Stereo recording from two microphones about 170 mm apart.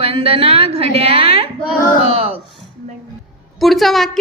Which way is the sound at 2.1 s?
35° right (ahead or behind).